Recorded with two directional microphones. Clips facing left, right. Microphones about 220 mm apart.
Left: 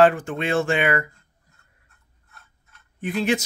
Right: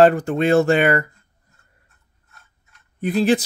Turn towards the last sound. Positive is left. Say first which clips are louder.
# right 5 dB
turn(degrees=-35)  # may be behind; listen again after turning